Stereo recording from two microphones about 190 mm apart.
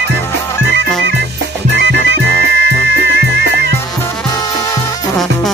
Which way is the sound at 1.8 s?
65° right (ahead or behind).